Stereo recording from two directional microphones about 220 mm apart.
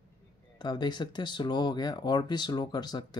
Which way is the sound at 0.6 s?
20° left (ahead or behind).